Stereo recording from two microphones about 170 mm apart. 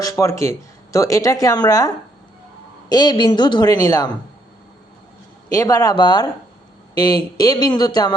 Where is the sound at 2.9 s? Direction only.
25° left (ahead or behind).